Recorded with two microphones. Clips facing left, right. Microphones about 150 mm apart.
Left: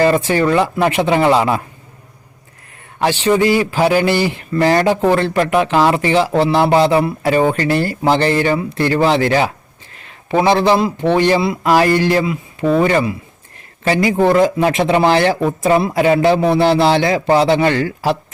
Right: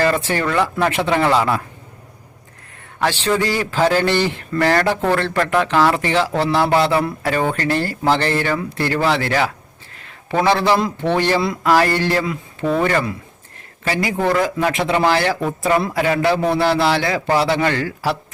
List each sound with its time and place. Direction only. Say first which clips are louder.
0.0 s speech: left 5 dB; 15° left (ahead or behind)
3.0 s speech: left 5 dB; 15° left (ahead or behind)